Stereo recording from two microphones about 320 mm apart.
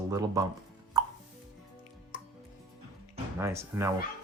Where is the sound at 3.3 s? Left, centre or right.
Centre.